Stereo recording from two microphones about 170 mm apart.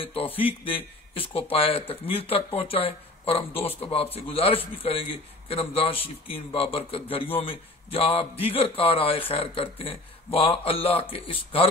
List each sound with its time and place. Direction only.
0.0 s a man's voice: 30° left (ahead or behind)